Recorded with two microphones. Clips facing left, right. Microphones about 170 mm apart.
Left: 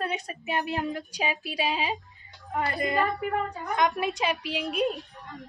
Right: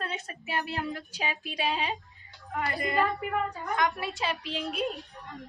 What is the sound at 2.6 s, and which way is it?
A woman's voice, 25° left (ahead or behind).